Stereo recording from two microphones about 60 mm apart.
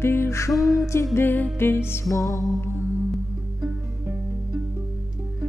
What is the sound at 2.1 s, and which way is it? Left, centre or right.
Music, left.